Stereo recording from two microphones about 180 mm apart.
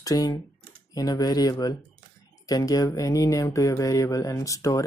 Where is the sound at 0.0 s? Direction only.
20° left (ahead or behind).